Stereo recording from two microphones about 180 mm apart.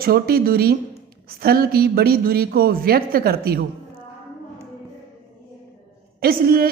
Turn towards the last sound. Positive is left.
turn(degrees=-55)  # may be behind; listen again after turning